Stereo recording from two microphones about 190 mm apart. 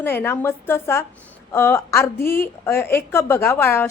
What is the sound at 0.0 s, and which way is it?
A woman's voice, 10° left (ahead or behind).